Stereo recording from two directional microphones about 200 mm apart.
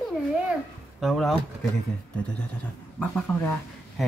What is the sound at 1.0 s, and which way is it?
Speech, centre (ahead or behind).